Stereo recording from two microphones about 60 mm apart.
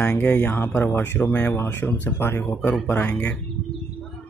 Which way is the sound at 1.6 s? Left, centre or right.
Left.